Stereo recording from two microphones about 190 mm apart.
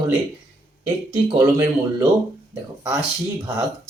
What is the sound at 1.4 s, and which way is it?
Speech, 15° right (ahead or behind).